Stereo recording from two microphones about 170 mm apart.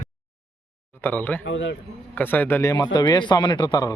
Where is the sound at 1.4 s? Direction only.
90° left.